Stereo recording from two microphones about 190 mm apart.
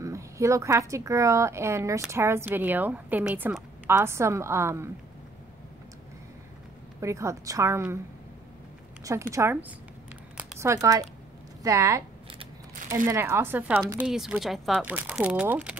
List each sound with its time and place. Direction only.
0.0 s a woman's voice: 15° right (ahead or behind)
7.0 s a woman's voice: 15° right (ahead or behind)
9.0 s a woman's voice: 15° right (ahead or behind)
10.3 s a sound: 15° right (ahead or behind)
11.6 s a woman's voice: 15° right (ahead or behind)